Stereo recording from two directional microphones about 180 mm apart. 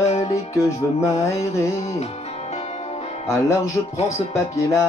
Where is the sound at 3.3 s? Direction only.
15° left (ahead or behind).